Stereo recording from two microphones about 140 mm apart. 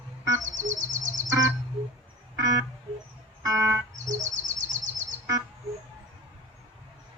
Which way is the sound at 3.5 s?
5° right (ahead or behind).